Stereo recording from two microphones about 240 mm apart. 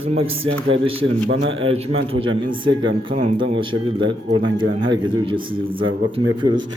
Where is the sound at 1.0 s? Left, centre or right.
Right.